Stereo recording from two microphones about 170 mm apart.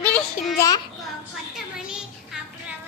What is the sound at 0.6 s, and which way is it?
Speech, 20° left (ahead or behind).